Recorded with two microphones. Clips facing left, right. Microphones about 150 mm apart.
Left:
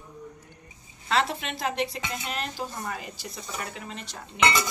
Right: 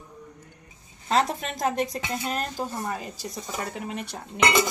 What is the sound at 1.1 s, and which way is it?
A woman's voice, 40° right (ahead or behind).